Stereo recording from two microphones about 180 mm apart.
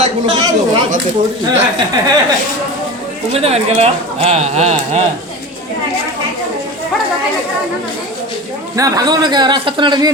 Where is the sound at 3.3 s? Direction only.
35° right (ahead or behind).